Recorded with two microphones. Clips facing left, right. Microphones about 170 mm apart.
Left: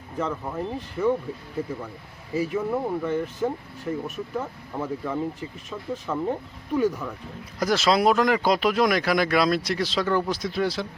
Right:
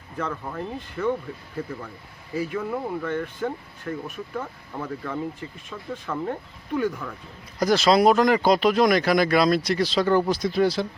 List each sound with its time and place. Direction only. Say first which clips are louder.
0.2 s speech: left 2 dB; 5° left (ahead or behind)
1.0 s speech: left 2 dB; 15° left (ahead or behind)
2.3 s speech: left 2 dB; 5° left (ahead or behind)